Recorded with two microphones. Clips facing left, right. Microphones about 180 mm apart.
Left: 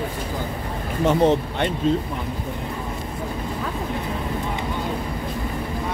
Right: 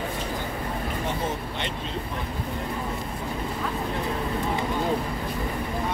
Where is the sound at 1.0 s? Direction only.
70° left (ahead or behind).